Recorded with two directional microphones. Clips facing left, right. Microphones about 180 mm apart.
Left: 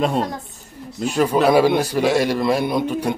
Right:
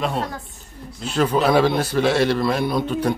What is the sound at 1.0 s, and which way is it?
A man's voice, 10° left (ahead or behind).